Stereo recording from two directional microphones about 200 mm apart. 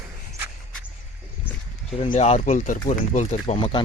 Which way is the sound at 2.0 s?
30° left (ahead or behind).